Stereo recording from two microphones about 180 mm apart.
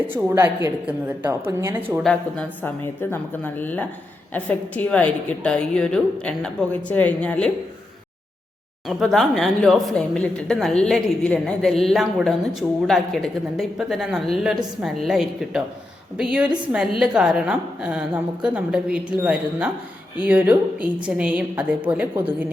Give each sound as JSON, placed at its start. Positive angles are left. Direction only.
{"t": 0.1, "sound": "a woman's voice", "side_deg": -10}
{"t": 2.0, "sound": "a woman's voice", "side_deg": 5}
{"t": 8.9, "sound": "a woman's voice", "side_deg": 0}